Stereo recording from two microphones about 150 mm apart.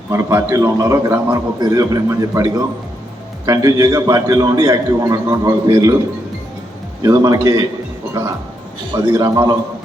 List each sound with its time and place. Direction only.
0.1 s a man's voice: 20° right (ahead or behind)
7.0 s a man's voice: 25° right (ahead or behind)
9.1 s a man's voice: 25° right (ahead or behind)